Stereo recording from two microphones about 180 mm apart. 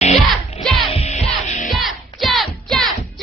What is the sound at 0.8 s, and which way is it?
Music, 35° left (ahead or behind).